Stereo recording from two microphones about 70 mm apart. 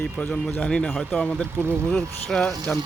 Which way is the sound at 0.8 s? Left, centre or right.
Centre.